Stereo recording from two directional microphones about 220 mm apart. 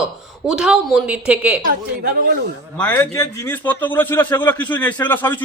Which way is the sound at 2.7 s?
10° left (ahead or behind).